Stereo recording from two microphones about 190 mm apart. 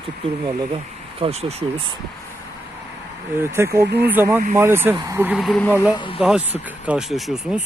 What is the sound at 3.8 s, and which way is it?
Speech, 60° right (ahead or behind).